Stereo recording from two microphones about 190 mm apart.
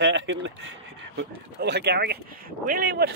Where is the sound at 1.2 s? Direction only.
60° right (ahead or behind).